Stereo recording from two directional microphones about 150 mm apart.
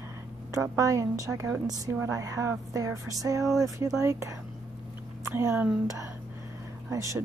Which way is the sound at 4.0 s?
20° right (ahead or behind).